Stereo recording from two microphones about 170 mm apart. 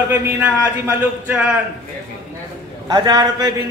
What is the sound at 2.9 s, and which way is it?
Speech, 25° right (ahead or behind).